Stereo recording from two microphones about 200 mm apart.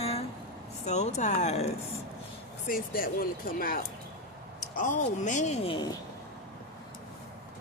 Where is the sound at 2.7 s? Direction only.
45° left (ahead or behind); by 5.9 s 25° left (ahead or behind).